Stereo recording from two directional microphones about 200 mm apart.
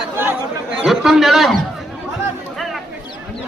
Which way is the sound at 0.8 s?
Centre (ahead or behind).